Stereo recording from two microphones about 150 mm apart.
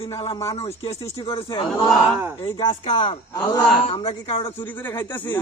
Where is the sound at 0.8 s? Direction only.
35° left (ahead or behind).